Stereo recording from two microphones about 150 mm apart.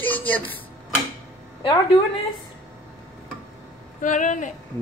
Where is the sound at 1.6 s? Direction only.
30° left (ahead or behind).